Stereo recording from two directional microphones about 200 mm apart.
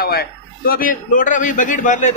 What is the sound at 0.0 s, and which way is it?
A man's voice, 50° left (ahead or behind).